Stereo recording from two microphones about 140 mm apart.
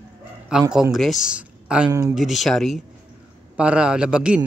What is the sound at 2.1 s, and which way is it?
A man's voice, centre (ahead or behind).